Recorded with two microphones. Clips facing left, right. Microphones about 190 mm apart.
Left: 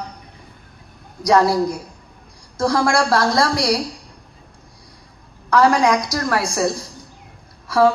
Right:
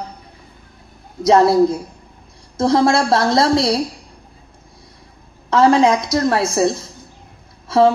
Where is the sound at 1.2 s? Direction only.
25° right (ahead or behind).